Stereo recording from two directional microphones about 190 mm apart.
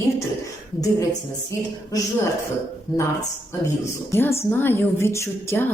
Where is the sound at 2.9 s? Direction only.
20° left (ahead or behind).